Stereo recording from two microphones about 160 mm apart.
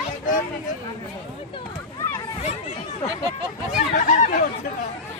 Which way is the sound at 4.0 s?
50° left (ahead or behind).